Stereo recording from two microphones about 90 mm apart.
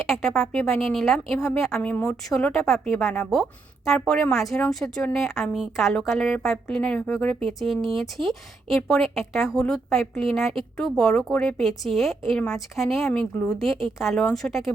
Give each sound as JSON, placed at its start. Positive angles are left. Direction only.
{"t": 0.0, "sound": "speech", "side_deg": 0}
{"t": 0.6, "sound": "a woman's voice", "side_deg": 30}
{"t": 0.9, "sound": "speech", "side_deg": 0}
{"t": 1.8, "sound": "speech", "side_deg": 15}
{"t": 2.3, "sound": "speech", "side_deg": 5}